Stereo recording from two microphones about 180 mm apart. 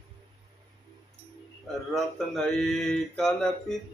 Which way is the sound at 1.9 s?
Centre (ahead or behind).